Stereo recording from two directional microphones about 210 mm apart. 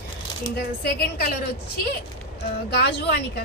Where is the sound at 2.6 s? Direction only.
50° left (ahead or behind).